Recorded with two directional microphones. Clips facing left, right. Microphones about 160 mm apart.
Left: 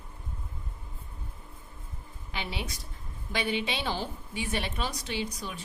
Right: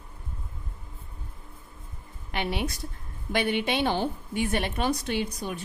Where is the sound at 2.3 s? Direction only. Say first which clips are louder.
Right 7 dB; 60° right (ahead or behind).